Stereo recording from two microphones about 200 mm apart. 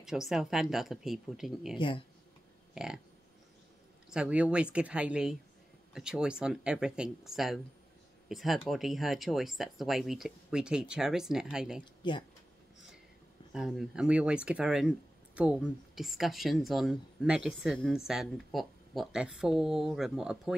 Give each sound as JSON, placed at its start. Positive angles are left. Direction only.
{"t": 0.0, "sound": "speech", "side_deg": 0}
{"t": 1.8, "sound": "speech", "side_deg": 25}
{"t": 2.7, "sound": "burping", "side_deg": -5}
{"t": 4.1, "sound": "speech", "side_deg": -5}
{"t": 11.8, "sound": "speech", "side_deg": 25}
{"t": 13.5, "sound": "speech", "side_deg": 0}